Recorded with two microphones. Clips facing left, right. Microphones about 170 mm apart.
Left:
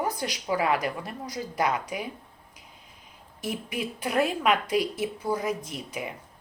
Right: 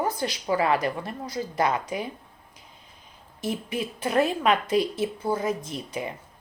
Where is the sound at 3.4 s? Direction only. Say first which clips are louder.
Right 2 dB; 15° left (ahead or behind).